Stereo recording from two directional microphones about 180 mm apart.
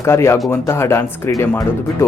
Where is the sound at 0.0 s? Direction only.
15° left (ahead or behind).